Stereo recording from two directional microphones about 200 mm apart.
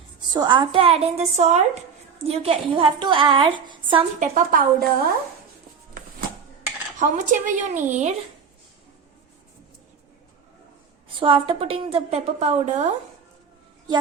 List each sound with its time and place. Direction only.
0.2 s a woman's voice: 20° right (ahead or behind)
4.2 s a woman's voice: 40° right (ahead or behind)
7.0 s a woman's voice: 40° right (ahead or behind)
11.2 s a woman's voice: 25° right (ahead or behind)